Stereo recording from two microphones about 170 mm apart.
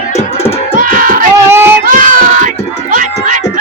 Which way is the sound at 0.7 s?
55° right (ahead or behind).